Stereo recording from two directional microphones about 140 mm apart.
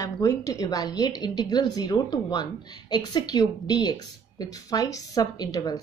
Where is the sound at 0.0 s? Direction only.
25° left (ahead or behind).